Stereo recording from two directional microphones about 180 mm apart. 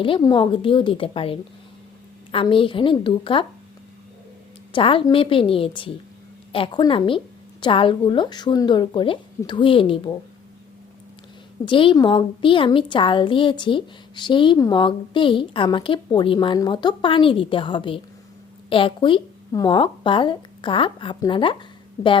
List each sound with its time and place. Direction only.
0.0 s a woman's voice: 25° left (ahead or behind)
4.7 s a woman's voice: 30° left (ahead or behind)
11.6 s a woman's voice: 25° left (ahead or behind)